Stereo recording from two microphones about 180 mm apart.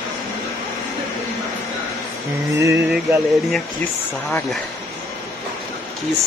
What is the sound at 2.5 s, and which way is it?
Speech, 15° right (ahead or behind).